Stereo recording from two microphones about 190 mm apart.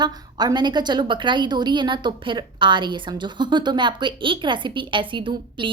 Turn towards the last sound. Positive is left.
turn(degrees=-25)  # may be behind; listen again after turning